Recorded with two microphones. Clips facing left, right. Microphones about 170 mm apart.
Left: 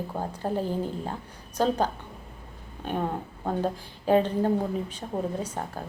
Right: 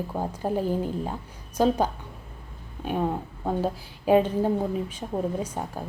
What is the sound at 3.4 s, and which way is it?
A woman's voice, 10° right (ahead or behind).